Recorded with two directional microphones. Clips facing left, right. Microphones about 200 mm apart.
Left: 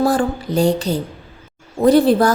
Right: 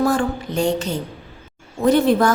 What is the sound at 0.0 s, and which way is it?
A woman's voice, 35° left (ahead or behind).